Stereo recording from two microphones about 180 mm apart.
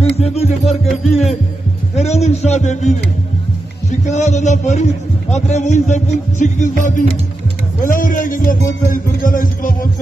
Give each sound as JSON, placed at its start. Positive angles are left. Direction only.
{"t": 0.1, "sound": "a man's voice", "side_deg": 35}
{"t": 4.1, "sound": "a man's voice", "side_deg": 40}